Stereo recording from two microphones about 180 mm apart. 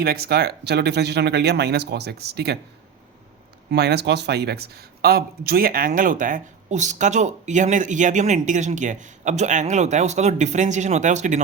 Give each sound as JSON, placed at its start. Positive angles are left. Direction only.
{"t": 0.0, "sound": "speech", "side_deg": -60}
{"t": 3.7, "sound": "a man's voice", "side_deg": -65}